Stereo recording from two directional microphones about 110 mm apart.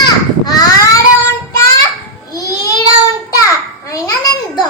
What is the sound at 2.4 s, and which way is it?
Child singing, 30° left (ahead or behind).